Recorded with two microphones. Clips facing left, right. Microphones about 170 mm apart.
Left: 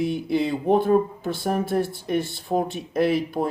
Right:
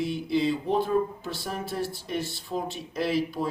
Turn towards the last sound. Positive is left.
turn(degrees=55)  # may be behind; listen again after turning